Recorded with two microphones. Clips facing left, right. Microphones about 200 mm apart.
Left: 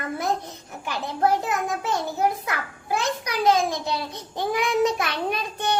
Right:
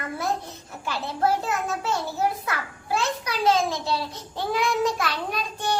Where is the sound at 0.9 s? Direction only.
15° left (ahead or behind).